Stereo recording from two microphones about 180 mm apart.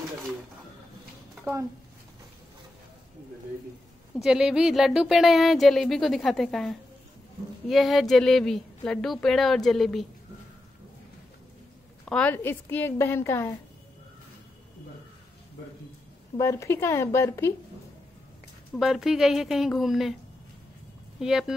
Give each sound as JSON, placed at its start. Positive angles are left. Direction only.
{"t": 1.4, "sound": "speech", "side_deg": -15}
{"t": 4.2, "sound": "speech", "side_deg": -5}
{"t": 12.1, "sound": "a woman's voice", "side_deg": 10}
{"t": 16.3, "sound": "a woman's voice", "side_deg": 15}
{"t": 18.8, "sound": "speech", "side_deg": 0}
{"t": 21.2, "sound": "speech", "side_deg": 0}